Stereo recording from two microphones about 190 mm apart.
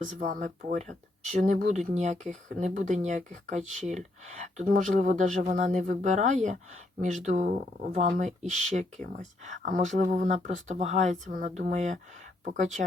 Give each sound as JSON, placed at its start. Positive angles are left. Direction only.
{"t": 0.1, "sound": "speech", "side_deg": -45}
{"t": 3.8, "sound": "speech", "side_deg": 0}
{"t": 4.3, "sound": "speech", "side_deg": -40}